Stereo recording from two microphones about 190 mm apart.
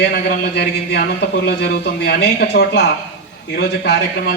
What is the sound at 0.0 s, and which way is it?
A man's voice, 55° left (ahead or behind).